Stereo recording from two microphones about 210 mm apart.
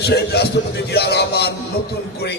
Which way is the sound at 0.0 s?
50° left (ahead or behind).